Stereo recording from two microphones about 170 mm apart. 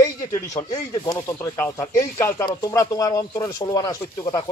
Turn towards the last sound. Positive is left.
turn(degrees=20)  # may be behind; listen again after turning